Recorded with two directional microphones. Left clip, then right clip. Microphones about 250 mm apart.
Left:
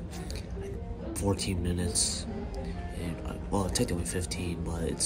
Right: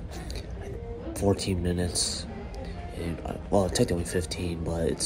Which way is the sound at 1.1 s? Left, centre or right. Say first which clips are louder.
Right 5 dB; centre.